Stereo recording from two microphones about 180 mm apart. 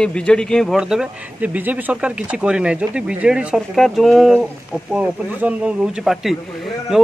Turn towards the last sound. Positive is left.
turn(degrees=0)  # may be behind; listen again after turning